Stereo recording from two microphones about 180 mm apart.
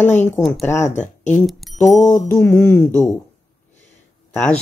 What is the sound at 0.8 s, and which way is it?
Speech, 40° left (ahead or behind).